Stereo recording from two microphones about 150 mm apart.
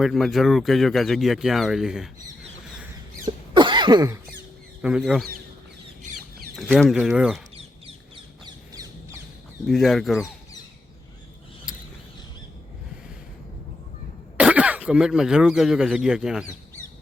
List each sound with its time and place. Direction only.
0.0 s speech: centre (ahead or behind)
3.2 s cough: 30° right (ahead or behind)
4.8 s speech: 5° right (ahead or behind)
6.7 s speech: centre (ahead or behind)
7.5 s bird: 35° right (ahead or behind)
9.6 s speech: centre (ahead or behind)
11.7 s a sound: 5° right (ahead or behind)
14.3 s speech: 10° right (ahead or behind)